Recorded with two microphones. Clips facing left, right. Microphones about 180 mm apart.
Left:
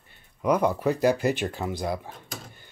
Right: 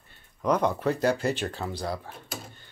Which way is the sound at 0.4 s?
10° left (ahead or behind).